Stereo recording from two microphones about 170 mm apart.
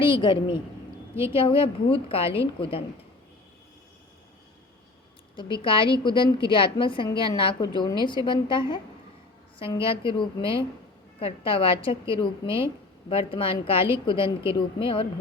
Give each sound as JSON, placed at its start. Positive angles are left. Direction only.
{"t": 0.0, "sound": "a woman's voice", "side_deg": 30}
{"t": 1.1, "sound": "a woman's voice", "side_deg": -15}
{"t": 1.4, "sound": "a woman's voice", "side_deg": 30}
{"t": 5.6, "sound": "a woman's voice", "side_deg": 30}